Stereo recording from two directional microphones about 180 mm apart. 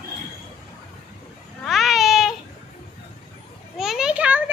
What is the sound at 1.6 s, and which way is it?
Baby cry, centre (ahead or behind).